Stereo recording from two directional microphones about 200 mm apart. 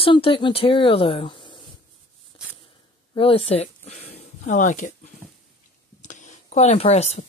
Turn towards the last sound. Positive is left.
turn(degrees=35)  # may be behind; listen again after turning